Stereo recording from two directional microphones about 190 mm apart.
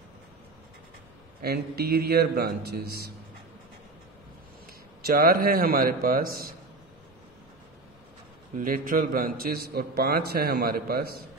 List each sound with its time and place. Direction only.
1.4 s a man's voice: 55° right (ahead or behind)
5.0 s a man's voice: 50° right (ahead or behind)
8.5 s a man's voice: 45° right (ahead or behind)